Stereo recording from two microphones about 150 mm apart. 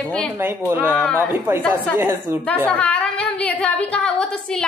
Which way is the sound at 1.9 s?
15° right (ahead or behind).